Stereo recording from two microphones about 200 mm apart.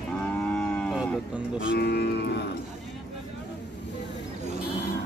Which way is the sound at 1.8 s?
55° left (ahead or behind).